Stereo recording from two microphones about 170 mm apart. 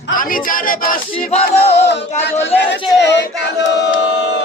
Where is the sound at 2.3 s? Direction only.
90° left.